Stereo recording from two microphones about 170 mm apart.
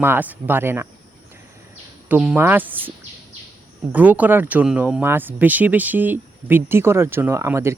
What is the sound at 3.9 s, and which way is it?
Speech, 10° right (ahead or behind).